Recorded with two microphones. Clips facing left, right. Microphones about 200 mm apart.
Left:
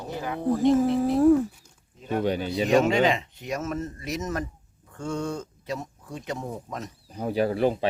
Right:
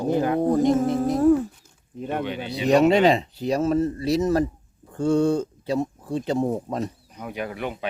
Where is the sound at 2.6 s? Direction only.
35° right (ahead or behind).